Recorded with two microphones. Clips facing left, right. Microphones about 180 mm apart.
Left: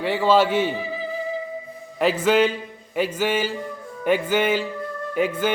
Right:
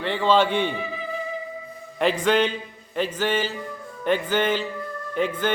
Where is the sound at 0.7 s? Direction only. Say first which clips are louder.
Left 2 dB; 35° left (ahead or behind).